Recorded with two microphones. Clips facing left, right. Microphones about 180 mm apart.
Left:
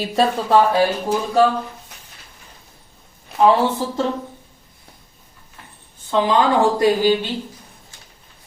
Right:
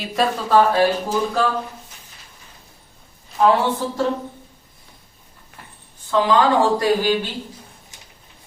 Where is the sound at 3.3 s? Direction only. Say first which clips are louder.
Left 2 dB; 60° left (ahead or behind).